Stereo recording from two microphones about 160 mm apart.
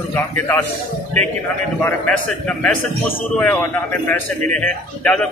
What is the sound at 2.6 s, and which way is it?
A man's voice, 10° left (ahead or behind).